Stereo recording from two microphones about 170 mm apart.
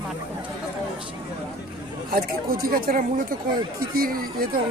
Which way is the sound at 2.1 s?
60° right (ahead or behind).